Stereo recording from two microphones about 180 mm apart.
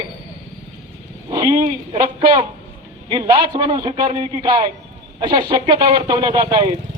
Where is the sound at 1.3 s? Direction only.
20° right (ahead or behind).